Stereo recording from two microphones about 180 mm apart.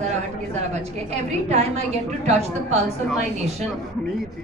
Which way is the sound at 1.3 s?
35° right (ahead or behind).